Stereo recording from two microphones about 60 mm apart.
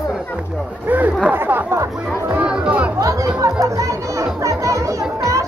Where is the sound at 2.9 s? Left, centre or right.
Right.